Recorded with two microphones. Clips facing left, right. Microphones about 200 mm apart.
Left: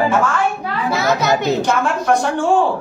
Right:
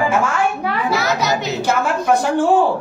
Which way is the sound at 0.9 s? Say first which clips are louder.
Left 4 dB; 55° left (ahead or behind).